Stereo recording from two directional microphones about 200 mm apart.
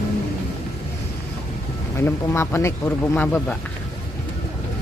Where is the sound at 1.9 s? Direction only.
10° left (ahead or behind).